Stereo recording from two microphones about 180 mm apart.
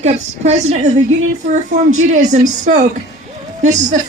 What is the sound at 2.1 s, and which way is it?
Speech, 40° right (ahead or behind).